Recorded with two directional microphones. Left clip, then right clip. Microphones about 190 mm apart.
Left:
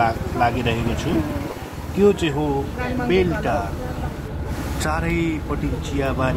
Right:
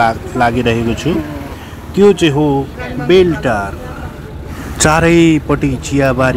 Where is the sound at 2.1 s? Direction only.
25° right (ahead or behind).